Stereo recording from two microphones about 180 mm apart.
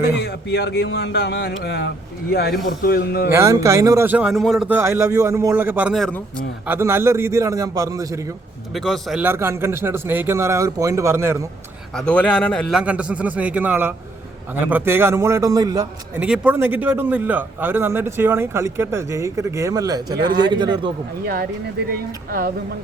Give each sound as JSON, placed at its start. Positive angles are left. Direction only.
{"t": 0.2, "sound": "speech", "side_deg": 70}
{"t": 2.6, "sound": "a man's voice", "side_deg": 55}
{"t": 3.3, "sound": "a man's voice", "side_deg": -15}
{"t": 4.8, "sound": "a man's voice", "side_deg": -15}
{"t": 6.7, "sound": "a man's voice", "side_deg": -15}
{"t": 8.7, "sound": "a man's voice", "side_deg": 0}
{"t": 9.2, "sound": "a man's voice", "side_deg": -10}
{"t": 11.9, "sound": "a man's voice", "side_deg": 5}
{"t": 12.8, "sound": "a man's voice", "side_deg": -5}
{"t": 16.2, "sound": "a man's voice", "side_deg": -5}
{"t": 21.8, "sound": "speech", "side_deg": -55}